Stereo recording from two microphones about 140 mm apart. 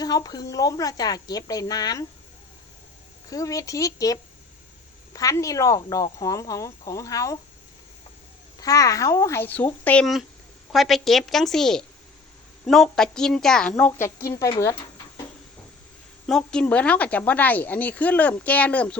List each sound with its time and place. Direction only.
0.0 s speech: 25° left (ahead or behind)
3.2 s speech: 25° left (ahead or behind)
8.6 s speech: 25° left (ahead or behind); by 10.1 s 10° left (ahead or behind)
10.7 s a woman's voice: centre (ahead or behind)
14.2 s speech: 20° left (ahead or behind)
16.2 s a woman's voice: 5° left (ahead or behind)